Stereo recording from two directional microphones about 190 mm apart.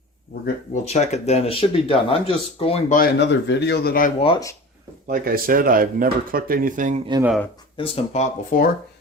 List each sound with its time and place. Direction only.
0.4 s speech: 40° left (ahead or behind)
2.9 s a man's voice: 55° left (ahead or behind)
4.2 s speech: 25° left (ahead or behind)
5.0 s speech: 50° right (ahead or behind)
7.8 s speech: 30° left (ahead or behind)
8.5 s speech: 45° left (ahead or behind)